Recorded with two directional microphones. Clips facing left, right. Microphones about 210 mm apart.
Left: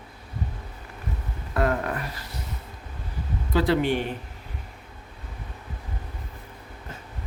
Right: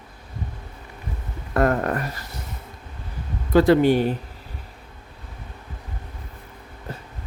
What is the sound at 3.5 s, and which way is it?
Speech, 45° right (ahead or behind).